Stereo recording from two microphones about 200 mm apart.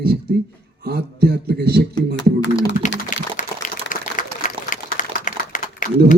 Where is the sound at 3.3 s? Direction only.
40° left (ahead or behind).